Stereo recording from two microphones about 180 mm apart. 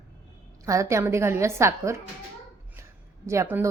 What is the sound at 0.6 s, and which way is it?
Speech, 15° right (ahead or behind).